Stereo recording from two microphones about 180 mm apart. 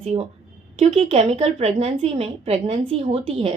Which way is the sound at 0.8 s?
30° right (ahead or behind).